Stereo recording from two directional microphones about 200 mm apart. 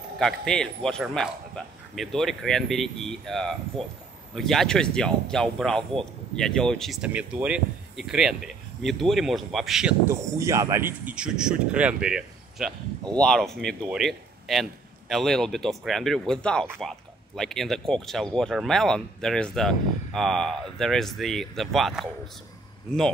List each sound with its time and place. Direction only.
0.2 s speech: 5° left (ahead or behind)